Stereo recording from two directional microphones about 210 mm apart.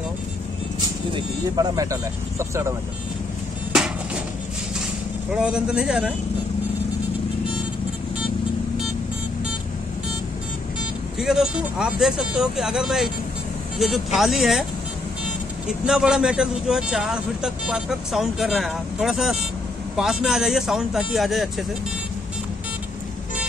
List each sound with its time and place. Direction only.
1.1 s speech: 15° right (ahead or behind)
3.7 s a sound: 5° right (ahead or behind)
5.3 s speech: 5° right (ahead or behind)
11.1 s speech: 5° right (ahead or behind)
15.8 s speech: 5° right (ahead or behind)